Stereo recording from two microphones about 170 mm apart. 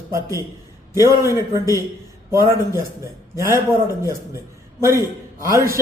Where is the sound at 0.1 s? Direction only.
20° right (ahead or behind).